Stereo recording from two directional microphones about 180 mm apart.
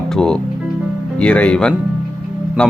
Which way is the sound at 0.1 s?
5° left (ahead or behind).